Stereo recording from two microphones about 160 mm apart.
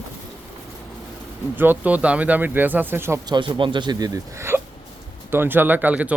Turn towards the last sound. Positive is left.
turn(degrees=-10)  # may be behind; listen again after turning